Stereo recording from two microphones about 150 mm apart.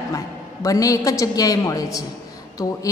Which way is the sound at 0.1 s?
20° left (ahead or behind).